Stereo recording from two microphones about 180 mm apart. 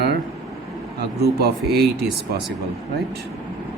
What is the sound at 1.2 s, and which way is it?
Speech, 60° right (ahead or behind).